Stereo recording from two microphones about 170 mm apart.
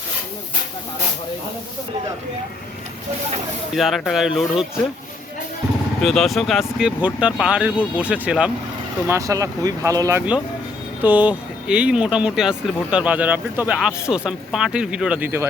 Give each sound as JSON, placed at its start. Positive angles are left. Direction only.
{"t": 3.8, "sound": "speech", "side_deg": 0}
{"t": 6.0, "sound": "speech", "side_deg": 0}
{"t": 9.0, "sound": "speech", "side_deg": -20}